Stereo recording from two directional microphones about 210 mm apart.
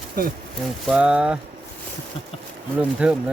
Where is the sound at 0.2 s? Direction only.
40° right (ahead or behind).